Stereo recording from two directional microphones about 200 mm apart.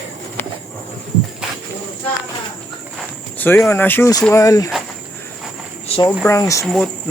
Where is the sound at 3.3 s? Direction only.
10° left (ahead or behind).